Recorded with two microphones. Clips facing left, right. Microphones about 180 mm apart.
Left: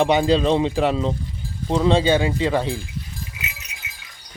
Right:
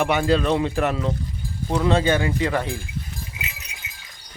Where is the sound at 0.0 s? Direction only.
20° left (ahead or behind).